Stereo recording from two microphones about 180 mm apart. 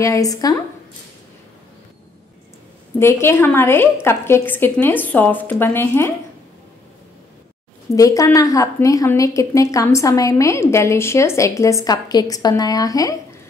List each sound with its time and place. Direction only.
0.0 s speech: 20° left (ahead or behind)
3.0 s a woman's voice: 15° left (ahead or behind)
7.9 s a woman's voice: 20° left (ahead or behind)